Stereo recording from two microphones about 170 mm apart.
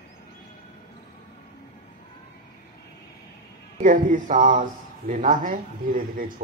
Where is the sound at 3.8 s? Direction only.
50° right (ahead or behind).